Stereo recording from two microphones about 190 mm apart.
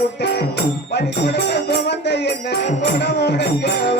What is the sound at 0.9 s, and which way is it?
Music, 60° left (ahead or behind).